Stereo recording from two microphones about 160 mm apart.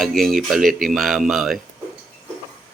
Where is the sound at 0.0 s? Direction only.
Centre (ahead or behind).